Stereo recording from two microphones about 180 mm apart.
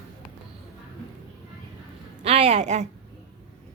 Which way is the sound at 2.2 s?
35° right (ahead or behind).